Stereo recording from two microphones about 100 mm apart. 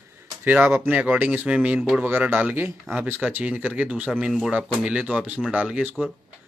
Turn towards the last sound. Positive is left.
turn(degrees=-10)  # may be behind; listen again after turning